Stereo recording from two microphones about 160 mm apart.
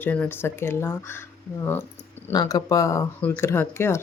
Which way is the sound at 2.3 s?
25° left (ahead or behind).